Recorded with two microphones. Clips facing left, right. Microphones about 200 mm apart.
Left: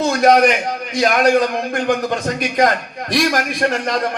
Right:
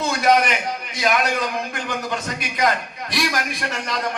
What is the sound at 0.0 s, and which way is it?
A man's voice, 45° left (ahead or behind).